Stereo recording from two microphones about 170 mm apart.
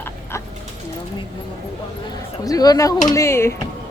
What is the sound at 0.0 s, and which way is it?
Bow-wow, 15° left (ahead or behind).